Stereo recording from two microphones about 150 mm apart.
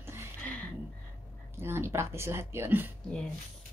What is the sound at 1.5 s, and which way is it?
Speech, 15° right (ahead or behind).